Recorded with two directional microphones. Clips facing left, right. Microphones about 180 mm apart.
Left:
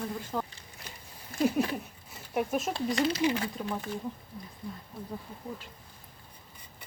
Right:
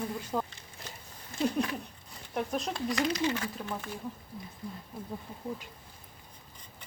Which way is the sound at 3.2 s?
15° left (ahead or behind).